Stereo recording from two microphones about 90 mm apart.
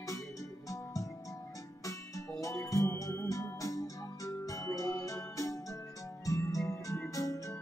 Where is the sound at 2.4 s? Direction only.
35° left (ahead or behind).